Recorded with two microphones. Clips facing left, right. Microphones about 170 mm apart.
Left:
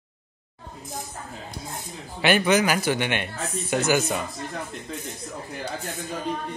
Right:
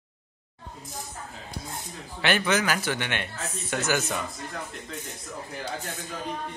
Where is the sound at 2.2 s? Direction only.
15° left (ahead or behind).